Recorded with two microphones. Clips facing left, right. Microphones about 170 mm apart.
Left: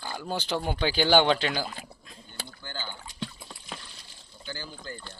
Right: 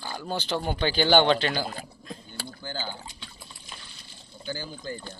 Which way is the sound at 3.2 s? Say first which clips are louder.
Left 9 dB; 90° left.